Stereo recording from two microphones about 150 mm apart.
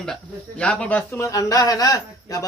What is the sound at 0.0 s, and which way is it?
A man's voice, 5° left (ahead or behind).